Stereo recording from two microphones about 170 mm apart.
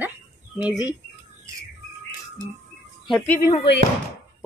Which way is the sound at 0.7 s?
20° left (ahead or behind).